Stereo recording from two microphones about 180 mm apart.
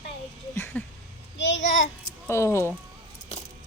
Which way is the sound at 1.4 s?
90° left.